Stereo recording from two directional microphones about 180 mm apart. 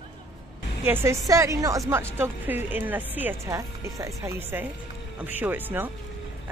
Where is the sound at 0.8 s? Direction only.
15° right (ahead or behind).